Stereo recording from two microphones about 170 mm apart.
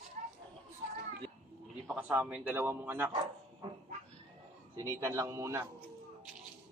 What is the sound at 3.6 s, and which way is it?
Dog, 35° right (ahead or behind).